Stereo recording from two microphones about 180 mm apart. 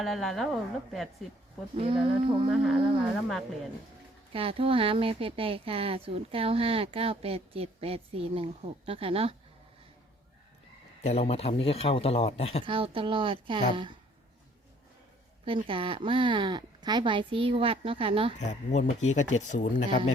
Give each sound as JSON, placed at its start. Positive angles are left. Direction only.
{"t": 0.0, "sound": "a woman's voice", "side_deg": 0}
{"t": 1.7, "sound": "a woman's voice", "side_deg": -30}
{"t": 2.5, "sound": "a woman's voice", "side_deg": -5}
{"t": 4.3, "sound": "speech", "side_deg": -30}
{"t": 11.0, "sound": "a man's voice", "side_deg": 35}
{"t": 12.6, "sound": "a woman's voice", "side_deg": -30}
{"t": 15.4, "sound": "a woman's voice", "side_deg": -30}
{"t": 18.3, "sound": "a man's voice", "side_deg": 40}